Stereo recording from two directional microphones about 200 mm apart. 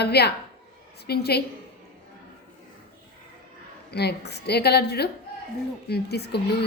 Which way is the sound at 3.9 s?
55° left (ahead or behind).